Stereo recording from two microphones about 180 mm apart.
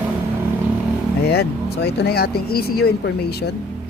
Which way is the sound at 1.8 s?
65° left (ahead or behind).